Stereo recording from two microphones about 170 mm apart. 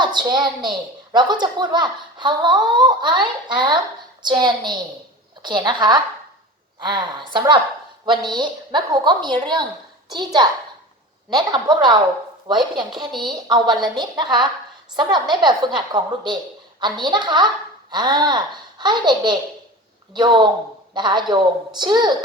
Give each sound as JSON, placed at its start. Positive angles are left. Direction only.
{"t": 0.0, "sound": "a child's voice", "side_deg": -25}